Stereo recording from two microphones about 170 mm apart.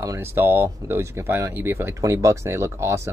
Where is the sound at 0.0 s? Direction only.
15° right (ahead or behind).